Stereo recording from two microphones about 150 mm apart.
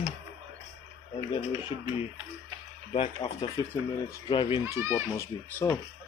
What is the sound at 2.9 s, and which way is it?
Speech, 45° left (ahead or behind).